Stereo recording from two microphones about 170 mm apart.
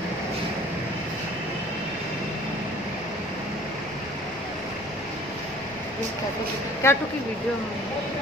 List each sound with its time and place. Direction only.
6.8 s speech: 15° left (ahead or behind)